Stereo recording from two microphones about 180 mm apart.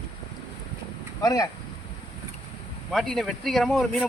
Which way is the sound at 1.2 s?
20° left (ahead or behind).